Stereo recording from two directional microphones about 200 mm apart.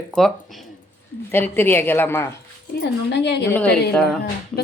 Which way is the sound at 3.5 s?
5° left (ahead or behind).